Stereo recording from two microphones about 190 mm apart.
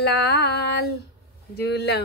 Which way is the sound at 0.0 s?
60° left (ahead or behind).